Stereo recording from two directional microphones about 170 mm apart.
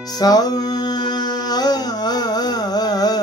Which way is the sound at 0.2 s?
20° left (ahead or behind).